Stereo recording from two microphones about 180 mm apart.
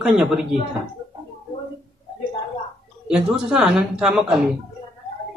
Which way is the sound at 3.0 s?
5° right (ahead or behind).